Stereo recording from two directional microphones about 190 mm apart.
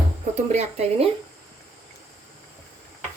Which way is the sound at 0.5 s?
35° right (ahead or behind).